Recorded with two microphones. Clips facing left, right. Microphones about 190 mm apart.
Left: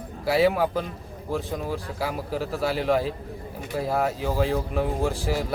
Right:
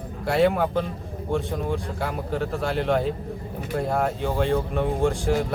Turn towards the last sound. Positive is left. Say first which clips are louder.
# right 3 dB
turn(degrees=5)  # may be behind; listen again after turning